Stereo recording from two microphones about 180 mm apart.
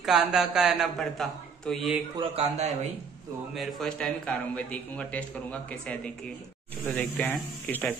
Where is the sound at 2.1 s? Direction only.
35° right (ahead or behind).